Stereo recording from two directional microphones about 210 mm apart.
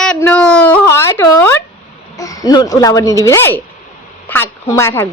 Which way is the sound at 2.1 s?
15° left (ahead or behind).